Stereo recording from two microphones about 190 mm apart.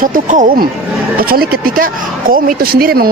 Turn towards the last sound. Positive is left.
turn(degrees=-50)  # may be behind; listen again after turning